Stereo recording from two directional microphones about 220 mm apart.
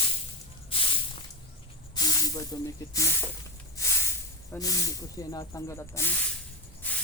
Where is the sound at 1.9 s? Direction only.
15° left (ahead or behind).